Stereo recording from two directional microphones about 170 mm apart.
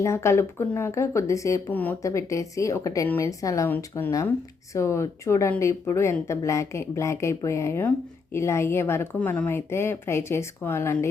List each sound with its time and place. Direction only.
0.0 s speech: 15° left (ahead or behind)